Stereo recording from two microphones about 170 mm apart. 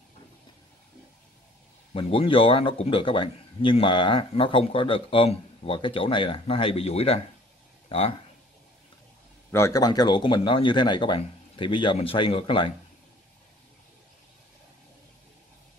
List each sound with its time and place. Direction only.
2.0 s speech: 30° left (ahead or behind)
9.5 s a man's voice: 20° left (ahead or behind)